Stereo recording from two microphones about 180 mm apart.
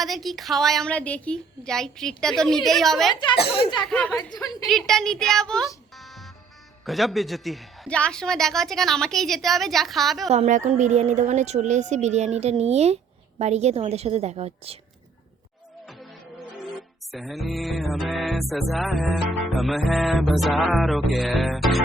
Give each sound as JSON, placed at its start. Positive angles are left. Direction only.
{"t": 0.0, "sound": "a woman's voice", "side_deg": 0}
{"t": 3.3, "sound": "speech", "side_deg": 65}
{"t": 3.8, "sound": "a woman's voice", "side_deg": 5}
{"t": 10.3, "sound": "speech", "side_deg": -40}
{"t": 15.9, "sound": "music", "side_deg": 0}
{"t": 17.1, "sound": "a woman's voice", "side_deg": 0}